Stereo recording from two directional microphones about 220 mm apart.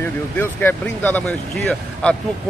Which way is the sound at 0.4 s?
10° left (ahead or behind).